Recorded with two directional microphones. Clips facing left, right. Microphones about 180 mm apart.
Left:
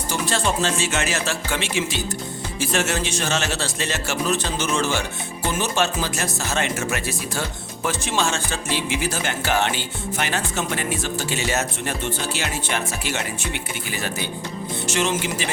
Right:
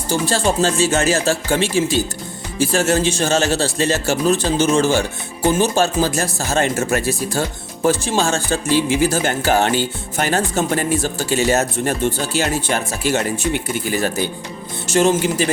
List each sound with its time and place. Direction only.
0.1 s speech: 30° right (ahead or behind)